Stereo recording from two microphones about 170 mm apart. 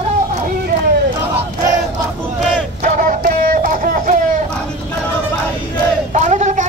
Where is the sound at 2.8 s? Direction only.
55° right (ahead or behind).